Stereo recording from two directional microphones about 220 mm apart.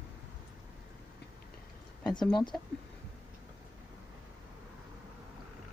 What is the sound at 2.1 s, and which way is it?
Speech, 20° left (ahead or behind).